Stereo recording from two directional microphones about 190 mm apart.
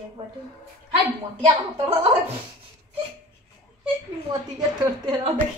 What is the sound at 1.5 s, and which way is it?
Speech, 30° right (ahead or behind).